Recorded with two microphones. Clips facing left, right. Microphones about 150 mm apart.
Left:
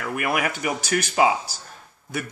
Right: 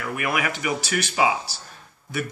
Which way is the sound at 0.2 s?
50° left (ahead or behind).